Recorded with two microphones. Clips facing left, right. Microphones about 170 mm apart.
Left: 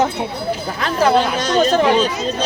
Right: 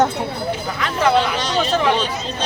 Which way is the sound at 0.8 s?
40° left (ahead or behind).